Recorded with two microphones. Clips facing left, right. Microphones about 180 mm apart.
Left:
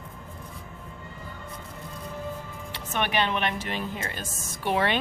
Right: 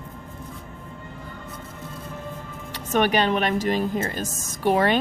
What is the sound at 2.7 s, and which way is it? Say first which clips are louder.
Speech: right 6 dB; 40° right (ahead or behind).